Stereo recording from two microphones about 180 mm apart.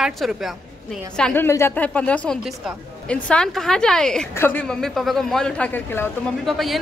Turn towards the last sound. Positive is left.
turn(degrees=0)  # may be behind; listen again after turning